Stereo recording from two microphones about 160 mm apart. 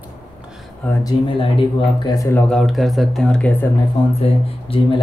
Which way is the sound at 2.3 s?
Centre (ahead or behind).